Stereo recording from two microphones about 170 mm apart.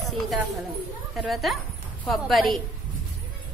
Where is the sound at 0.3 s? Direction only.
Centre (ahead or behind).